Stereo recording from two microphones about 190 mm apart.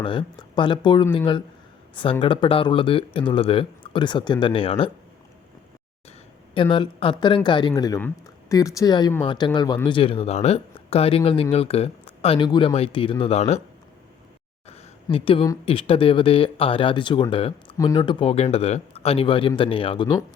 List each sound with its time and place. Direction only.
0.0 s speech: 25° left (ahead or behind)
6.5 s speech: 25° left (ahead or behind)
15.1 s speech: 30° left (ahead or behind)